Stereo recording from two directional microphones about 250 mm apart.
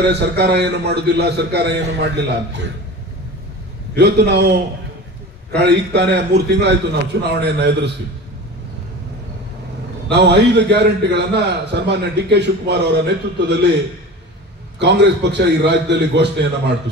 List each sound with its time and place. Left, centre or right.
0.0 s a man's voice: right
3.9 s a man's voice: right
10.0 s a man's voice: right
14.8 s a man's voice: right